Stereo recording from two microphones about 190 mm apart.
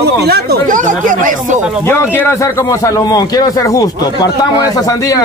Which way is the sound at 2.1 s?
15° left (ahead or behind).